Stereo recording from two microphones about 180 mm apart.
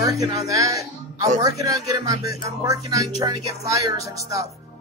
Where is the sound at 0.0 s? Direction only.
20° right (ahead or behind).